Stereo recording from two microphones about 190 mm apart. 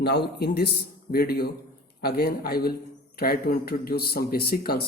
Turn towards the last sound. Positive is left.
turn(degrees=55)  # may be behind; listen again after turning